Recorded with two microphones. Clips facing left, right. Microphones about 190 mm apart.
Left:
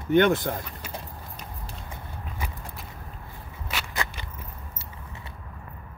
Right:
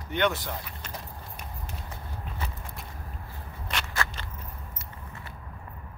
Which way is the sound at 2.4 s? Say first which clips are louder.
Left 2 dB; 10° left (ahead or behind).